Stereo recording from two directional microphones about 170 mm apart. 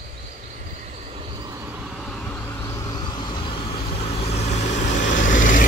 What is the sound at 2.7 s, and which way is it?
Vehicle, 20° left (ahead or behind).